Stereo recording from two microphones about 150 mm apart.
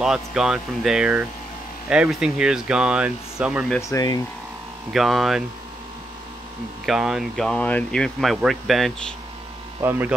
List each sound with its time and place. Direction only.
0.0 s speech: 5° right (ahead or behind)
3.9 s speech: 25° left (ahead or behind)
4.9 s speech: centre (ahead or behind)
6.9 s speech: 5° right (ahead or behind)
9.8 s speech: 15° right (ahead or behind)